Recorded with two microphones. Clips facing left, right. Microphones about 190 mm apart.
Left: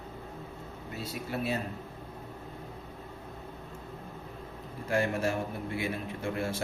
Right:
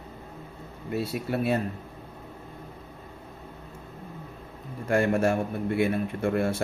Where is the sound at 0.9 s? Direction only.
60° right (ahead or behind).